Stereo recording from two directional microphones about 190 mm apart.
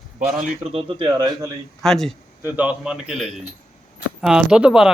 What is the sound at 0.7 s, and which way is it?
Speech, 25° right (ahead or behind).